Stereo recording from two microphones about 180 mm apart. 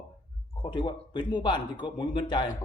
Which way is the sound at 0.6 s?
25° left (ahead or behind).